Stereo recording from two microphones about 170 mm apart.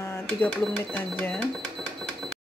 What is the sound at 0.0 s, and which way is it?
Cash register, 15° left (ahead or behind).